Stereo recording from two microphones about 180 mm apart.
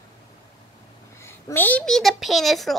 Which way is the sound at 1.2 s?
10° left (ahead or behind).